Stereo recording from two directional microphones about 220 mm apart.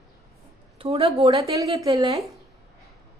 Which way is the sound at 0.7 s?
25° right (ahead or behind).